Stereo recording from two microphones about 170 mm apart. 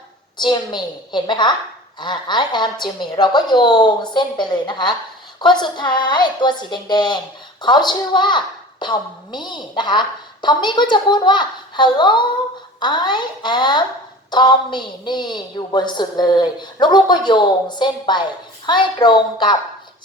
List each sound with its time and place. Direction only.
0.3 s a woman's voice: 25° left (ahead or behind)